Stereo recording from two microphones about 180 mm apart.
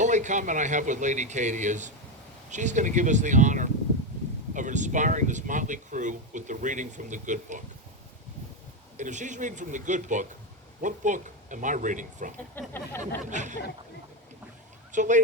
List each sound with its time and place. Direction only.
0.0 s speech: 40° right (ahead or behind)
9.0 s speech: 40° right (ahead or behind)
12.5 s a sound: 10° left (ahead or behind)
13.0 s speech: 40° right (ahead or behind)
14.9 s speech: 45° right (ahead or behind)